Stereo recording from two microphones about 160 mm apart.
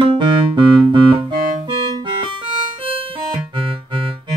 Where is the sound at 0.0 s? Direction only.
30° right (ahead or behind).